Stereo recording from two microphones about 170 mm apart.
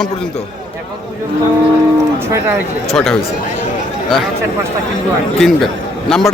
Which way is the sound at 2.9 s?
Centre (ahead or behind).